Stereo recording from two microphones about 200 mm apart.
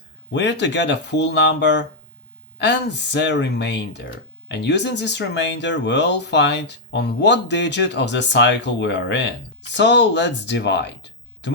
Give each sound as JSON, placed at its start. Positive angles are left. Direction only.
{"t": 0.3, "sound": "speech", "side_deg": 60}